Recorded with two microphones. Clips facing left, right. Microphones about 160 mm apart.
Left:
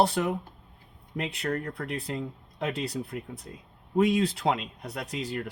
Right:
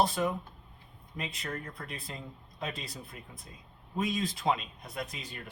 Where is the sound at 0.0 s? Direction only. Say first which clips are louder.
Left 4 dB; 70° left (ahead or behind).